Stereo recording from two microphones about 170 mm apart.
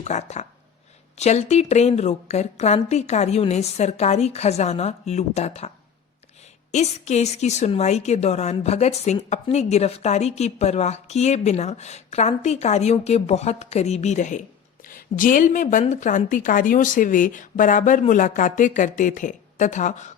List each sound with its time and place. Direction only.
0.0 s a woman's voice: 40° left (ahead or behind)